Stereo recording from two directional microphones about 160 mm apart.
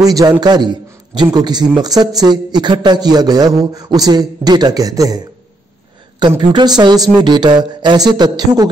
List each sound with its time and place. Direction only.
0.0 s a man's voice: 25° right (ahead or behind)